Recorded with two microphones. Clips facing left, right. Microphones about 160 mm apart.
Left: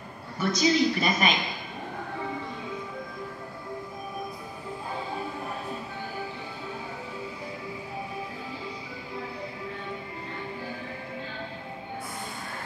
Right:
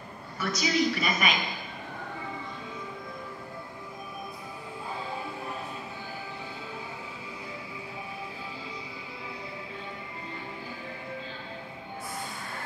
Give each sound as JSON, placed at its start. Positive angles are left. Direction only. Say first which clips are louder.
{"t": 0.4, "sound": "a man's voice", "louder": "left 4 dB", "side_deg": 30}